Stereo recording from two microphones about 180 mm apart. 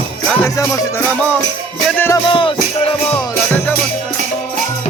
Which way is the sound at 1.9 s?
10° left (ahead or behind).